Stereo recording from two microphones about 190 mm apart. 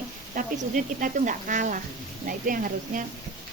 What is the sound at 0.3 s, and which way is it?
Speech, 45° right (ahead or behind).